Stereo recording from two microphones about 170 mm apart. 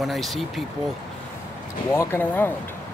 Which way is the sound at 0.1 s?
Centre (ahead or behind).